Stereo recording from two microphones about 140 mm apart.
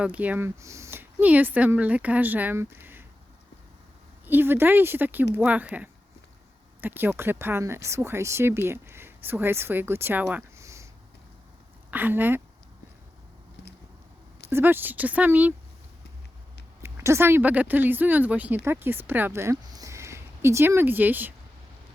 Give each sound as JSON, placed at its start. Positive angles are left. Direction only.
{"t": 0.0, "sound": "speech", "side_deg": -10}
{"t": 4.3, "sound": "speech", "side_deg": -15}
{"t": 11.9, "sound": "speech", "side_deg": -15}
{"t": 14.5, "sound": "speech", "side_deg": -15}
{"t": 16.8, "sound": "speech", "side_deg": -20}